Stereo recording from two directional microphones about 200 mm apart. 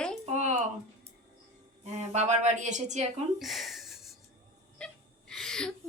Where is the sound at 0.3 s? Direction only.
35° right (ahead or behind).